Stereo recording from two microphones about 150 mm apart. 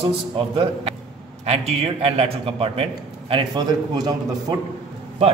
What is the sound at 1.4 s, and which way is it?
A man's voice, 45° right (ahead or behind).